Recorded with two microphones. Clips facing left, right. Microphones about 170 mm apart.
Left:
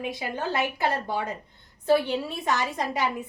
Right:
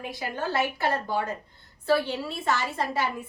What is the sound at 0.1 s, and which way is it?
A woman's voice, 20° left (ahead or behind).